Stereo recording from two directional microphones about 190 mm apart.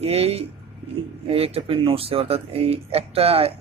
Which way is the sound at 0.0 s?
30° right (ahead or behind).